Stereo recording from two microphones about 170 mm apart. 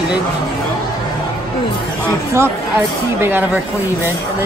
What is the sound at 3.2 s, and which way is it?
Speech, 10° right (ahead or behind).